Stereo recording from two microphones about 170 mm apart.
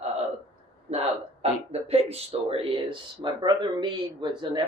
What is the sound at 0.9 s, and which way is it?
Speech, 40° right (ahead or behind).